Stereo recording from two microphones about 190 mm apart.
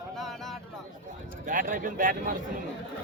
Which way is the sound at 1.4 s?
45° right (ahead or behind).